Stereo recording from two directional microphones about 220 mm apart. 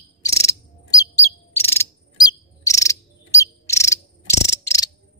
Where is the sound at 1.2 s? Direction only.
10° left (ahead or behind).